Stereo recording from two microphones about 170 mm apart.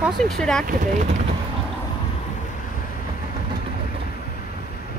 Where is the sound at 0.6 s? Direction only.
50° right (ahead or behind).